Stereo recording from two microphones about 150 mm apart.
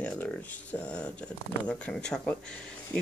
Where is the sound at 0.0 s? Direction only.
10° left (ahead or behind).